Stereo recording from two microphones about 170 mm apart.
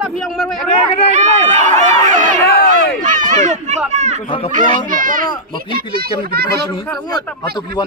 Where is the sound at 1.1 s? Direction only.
45° right (ahead or behind).